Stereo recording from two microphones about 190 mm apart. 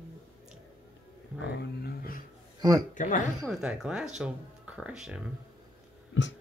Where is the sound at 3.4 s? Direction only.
Centre (ahead or behind).